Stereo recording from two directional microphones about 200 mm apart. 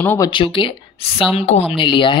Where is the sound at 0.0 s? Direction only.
10° left (ahead or behind).